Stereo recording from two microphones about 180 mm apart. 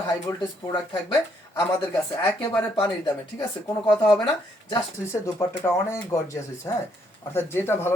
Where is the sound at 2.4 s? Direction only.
20° left (ahead or behind).